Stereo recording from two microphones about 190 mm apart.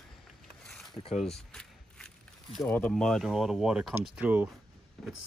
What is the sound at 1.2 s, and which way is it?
Speech, 5° left (ahead or behind).